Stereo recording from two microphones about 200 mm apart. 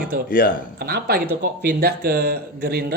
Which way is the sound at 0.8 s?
50° right (ahead or behind).